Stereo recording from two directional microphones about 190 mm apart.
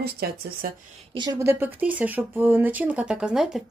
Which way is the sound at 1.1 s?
20° right (ahead or behind).